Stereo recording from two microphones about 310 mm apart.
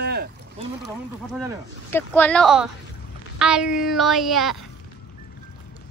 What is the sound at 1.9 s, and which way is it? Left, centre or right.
Speech, centre.